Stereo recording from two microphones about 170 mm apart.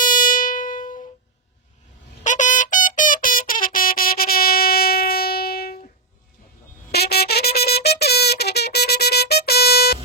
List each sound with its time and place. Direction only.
0.0 s music: 50° left (ahead or behind)
2.2 s music: 45° left (ahead or behind); by 5.8 s 65° left (ahead or behind)
6.9 s music: 70° left (ahead or behind)